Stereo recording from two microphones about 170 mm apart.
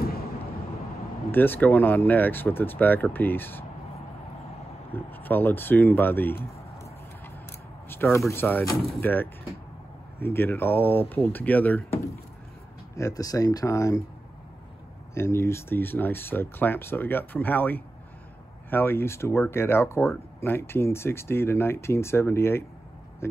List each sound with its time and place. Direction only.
1.3 s speech: 10° left (ahead or behind)
4.9 s speech: 10° left (ahead or behind)
7.9 s a sound: 15° left (ahead or behind)
8.3 s speech: 10° left (ahead or behind)
15.1 s speech: 15° left (ahead or behind)